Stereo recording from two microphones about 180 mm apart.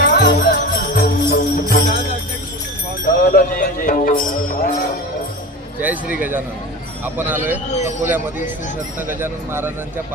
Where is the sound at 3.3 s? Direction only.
50° left (ahead or behind).